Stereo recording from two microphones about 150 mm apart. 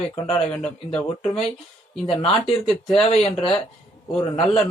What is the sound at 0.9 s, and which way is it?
A man's voice, 40° left (ahead or behind).